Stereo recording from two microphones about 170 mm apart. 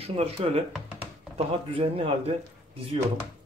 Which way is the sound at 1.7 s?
35° right (ahead or behind).